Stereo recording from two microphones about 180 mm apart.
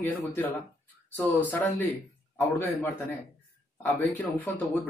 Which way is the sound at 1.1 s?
10° left (ahead or behind).